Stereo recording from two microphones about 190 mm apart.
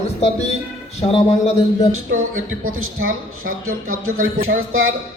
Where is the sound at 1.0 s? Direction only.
35° left (ahead or behind).